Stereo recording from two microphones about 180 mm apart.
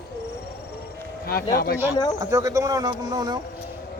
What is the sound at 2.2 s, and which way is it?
Speech, 20° right (ahead or behind).